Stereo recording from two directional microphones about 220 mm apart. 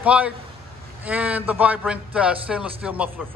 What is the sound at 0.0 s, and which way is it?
Speech, 5° right (ahead or behind).